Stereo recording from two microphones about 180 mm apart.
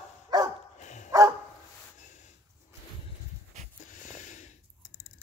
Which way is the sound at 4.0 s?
45° left (ahead or behind).